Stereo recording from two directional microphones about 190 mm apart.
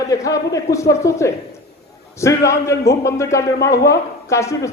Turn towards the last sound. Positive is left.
turn(degrees=15)  # may be behind; listen again after turning